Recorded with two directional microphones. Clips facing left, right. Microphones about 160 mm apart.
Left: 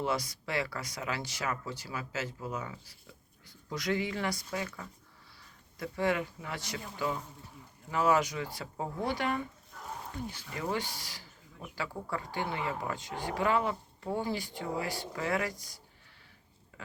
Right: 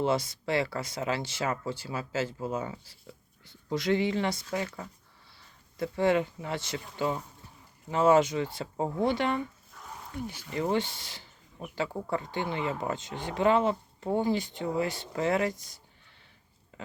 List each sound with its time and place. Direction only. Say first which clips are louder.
0.0 s speech: right 5 dB; 25° right (ahead or behind)
10.5 s speech: right 7 dB; 25° right (ahead or behind)
16.7 s a sound: right 5 dB; 25° right (ahead or behind)